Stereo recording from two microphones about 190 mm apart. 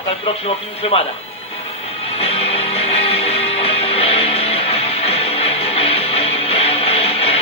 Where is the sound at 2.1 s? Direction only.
30° left (ahead or behind).